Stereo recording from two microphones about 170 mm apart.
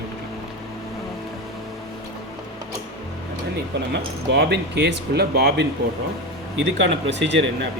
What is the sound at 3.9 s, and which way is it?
Speech, 80° right.